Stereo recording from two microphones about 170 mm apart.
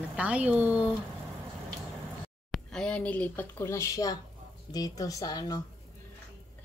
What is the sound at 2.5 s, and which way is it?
Speech, 5° left (ahead or behind).